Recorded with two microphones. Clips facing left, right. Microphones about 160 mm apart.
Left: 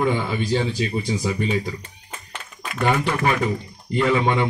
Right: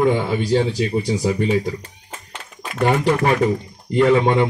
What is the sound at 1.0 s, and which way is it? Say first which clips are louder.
Speech: right 4 dB; 35° right (ahead or behind).